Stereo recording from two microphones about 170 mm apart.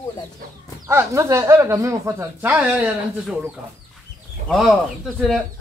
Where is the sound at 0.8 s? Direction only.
15° right (ahead or behind).